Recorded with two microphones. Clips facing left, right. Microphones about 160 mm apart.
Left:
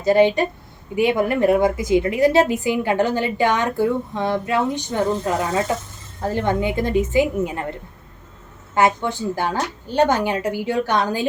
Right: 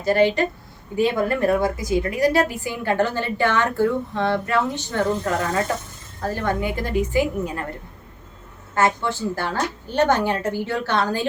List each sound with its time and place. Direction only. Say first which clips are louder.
0.0 s a woman's voice: left 3 dB; 20° left (ahead or behind)
8.7 s a woman's voice: left 2 dB; 20° left (ahead or behind)